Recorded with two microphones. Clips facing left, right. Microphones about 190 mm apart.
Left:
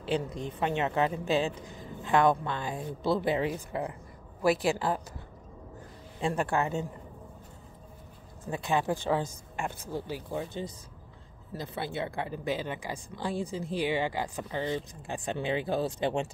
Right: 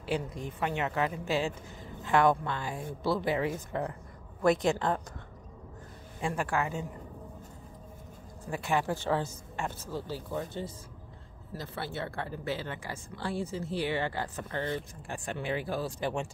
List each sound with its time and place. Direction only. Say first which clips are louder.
0.0 s a woman's voice: left 2 dB; 25° left (ahead or behind)
3.5 s speech: even; 10° left (ahead or behind)
6.2 s a woman's voice: left 3 dB; 25° left (ahead or behind)
8.5 s speech: left 1 dB; 20° left (ahead or behind)
11.5 s speech: left 3 dB; 15° left (ahead or behind)